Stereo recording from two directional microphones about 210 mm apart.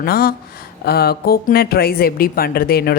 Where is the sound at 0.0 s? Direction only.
45° left (ahead or behind).